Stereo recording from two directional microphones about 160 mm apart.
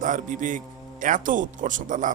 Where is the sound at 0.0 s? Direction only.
55° right (ahead or behind).